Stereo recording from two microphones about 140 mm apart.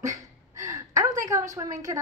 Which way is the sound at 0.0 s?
20° right (ahead or behind).